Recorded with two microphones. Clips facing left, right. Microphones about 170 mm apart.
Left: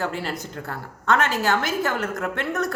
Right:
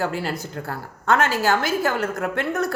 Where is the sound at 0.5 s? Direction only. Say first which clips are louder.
Right 2 dB; 35° right (ahead or behind).